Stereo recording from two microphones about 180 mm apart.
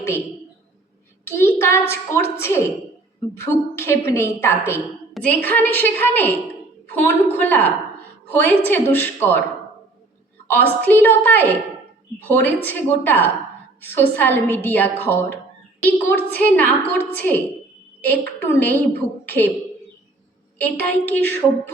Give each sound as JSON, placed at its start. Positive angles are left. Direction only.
{"t": 1.3, "sound": "child singing", "side_deg": 15}
{"t": 1.9, "sound": "a woman's voice", "side_deg": 15}
{"t": 10.5, "sound": "a woman's voice", "side_deg": 10}
{"t": 20.6, "sound": "a woman's voice", "side_deg": 10}